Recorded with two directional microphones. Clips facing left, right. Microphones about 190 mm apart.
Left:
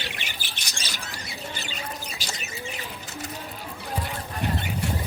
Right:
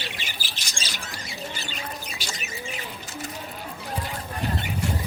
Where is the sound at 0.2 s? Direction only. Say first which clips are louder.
Even; 60° left (ahead or behind).